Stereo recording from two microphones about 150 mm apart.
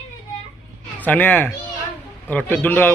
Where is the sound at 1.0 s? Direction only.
10° left (ahead or behind).